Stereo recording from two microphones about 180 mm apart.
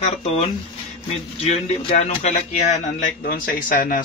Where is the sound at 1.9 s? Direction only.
40° left (ahead or behind).